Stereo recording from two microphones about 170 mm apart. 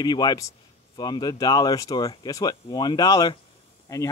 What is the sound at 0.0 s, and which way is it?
Speech, 25° left (ahead or behind).